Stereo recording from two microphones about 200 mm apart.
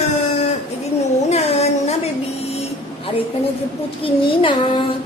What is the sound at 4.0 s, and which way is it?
Speech, 25° left (ahead or behind).